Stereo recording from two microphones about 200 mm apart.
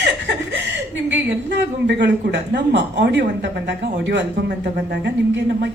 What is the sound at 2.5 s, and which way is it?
A woman's voice, 60° right (ahead or behind).